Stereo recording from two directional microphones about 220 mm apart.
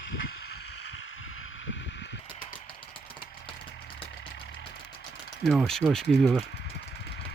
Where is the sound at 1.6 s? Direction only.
60° left (ahead or behind).